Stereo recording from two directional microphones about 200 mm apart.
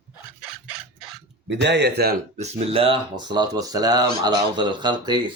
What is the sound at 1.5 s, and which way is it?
Speech, 60° right (ahead or behind).